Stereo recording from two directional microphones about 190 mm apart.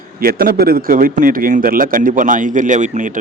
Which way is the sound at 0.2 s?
50° right (ahead or behind).